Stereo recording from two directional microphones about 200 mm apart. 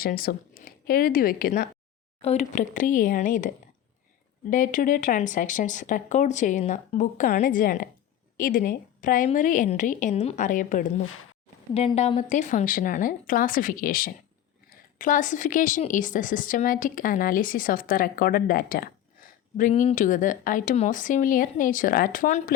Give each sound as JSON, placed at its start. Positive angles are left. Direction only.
{"t": 0.0, "sound": "a woman's voice", "side_deg": 50}
{"t": 2.2, "sound": "a woman's voice", "side_deg": 35}